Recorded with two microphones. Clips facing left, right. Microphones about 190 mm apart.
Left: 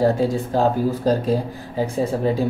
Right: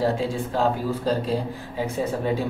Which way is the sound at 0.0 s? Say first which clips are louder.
Left 5 dB; 45° left (ahead or behind).